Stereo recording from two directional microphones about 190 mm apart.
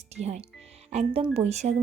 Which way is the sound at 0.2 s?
35° right (ahead or behind).